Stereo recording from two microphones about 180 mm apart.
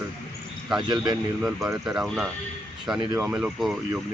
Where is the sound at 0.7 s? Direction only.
25° right (ahead or behind).